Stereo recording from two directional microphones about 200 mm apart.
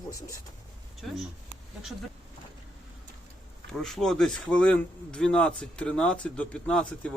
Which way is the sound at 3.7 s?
Centre (ahead or behind).